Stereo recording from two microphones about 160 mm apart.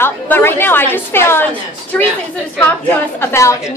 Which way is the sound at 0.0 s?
15° left (ahead or behind).